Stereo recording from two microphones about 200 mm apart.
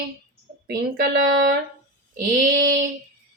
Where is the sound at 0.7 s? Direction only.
55° right (ahead or behind).